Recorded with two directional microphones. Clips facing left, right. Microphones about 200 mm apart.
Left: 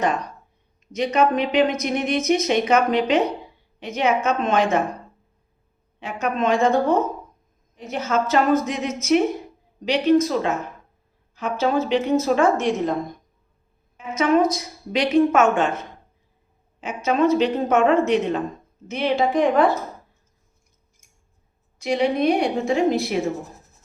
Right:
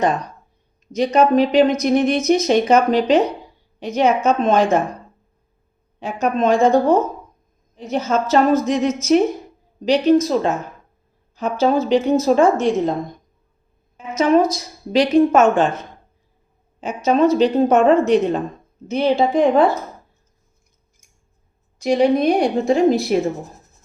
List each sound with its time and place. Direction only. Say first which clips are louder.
0.9 s a woman's voice: right 5 dB; 35° right (ahead or behind)
6.0 s a woman's voice: right 5 dB; 35° right (ahead or behind)
14.5 s a woman's voice: right 6 dB; 35° right (ahead or behind)
16.8 s a woman's voice: right 4 dB; 35° right (ahead or behind)
21.8 s a woman's voice: right 5 dB; 40° right (ahead or behind)